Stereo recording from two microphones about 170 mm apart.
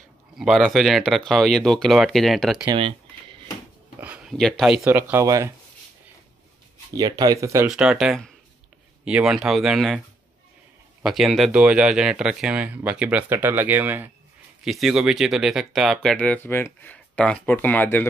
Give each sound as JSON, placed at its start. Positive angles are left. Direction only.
{"t": 0.4, "sound": "speech", "side_deg": 0}
{"t": 2.6, "sound": "typing", "side_deg": -30}
{"t": 4.0, "sound": "speech", "side_deg": -5}
{"t": 4.9, "sound": "speech", "side_deg": -15}
{"t": 6.9, "sound": "speech", "side_deg": -20}
{"t": 7.6, "sound": "speech", "side_deg": -5}